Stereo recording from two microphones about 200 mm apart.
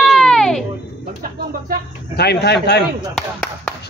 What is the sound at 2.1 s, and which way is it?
Speech, 55° left (ahead or behind).